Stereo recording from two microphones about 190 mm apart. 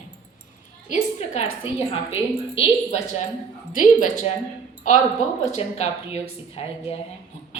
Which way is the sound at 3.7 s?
45° left (ahead or behind).